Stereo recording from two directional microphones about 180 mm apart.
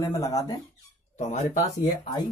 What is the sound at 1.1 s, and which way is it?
Speech, 40° left (ahead or behind).